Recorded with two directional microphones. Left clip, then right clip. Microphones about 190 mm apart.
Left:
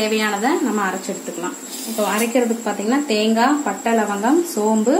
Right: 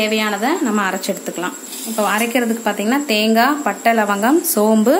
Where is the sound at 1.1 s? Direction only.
45° right (ahead or behind).